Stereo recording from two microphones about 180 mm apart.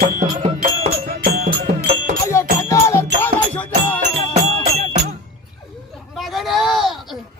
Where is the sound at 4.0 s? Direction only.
40° right (ahead or behind).